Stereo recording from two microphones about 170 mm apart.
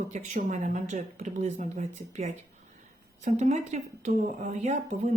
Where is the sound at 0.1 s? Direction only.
45° right (ahead or behind).